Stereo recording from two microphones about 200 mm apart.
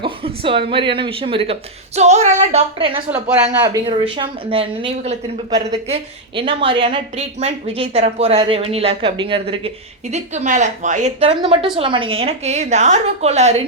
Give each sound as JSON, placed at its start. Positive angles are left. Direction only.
{"t": 0.0, "sound": "a woman's voice", "side_deg": -25}